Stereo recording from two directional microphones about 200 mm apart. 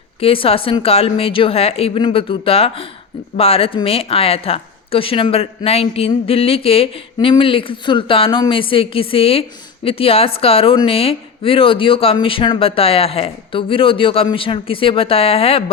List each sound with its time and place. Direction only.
0.2 s speech: 30° left (ahead or behind)